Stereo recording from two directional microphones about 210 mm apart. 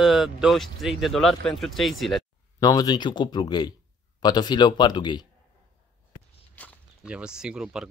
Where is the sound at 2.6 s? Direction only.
20° left (ahead or behind).